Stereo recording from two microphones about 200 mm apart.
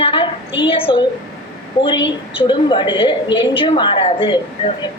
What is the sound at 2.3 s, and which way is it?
A woman's voice, 25° left (ahead or behind).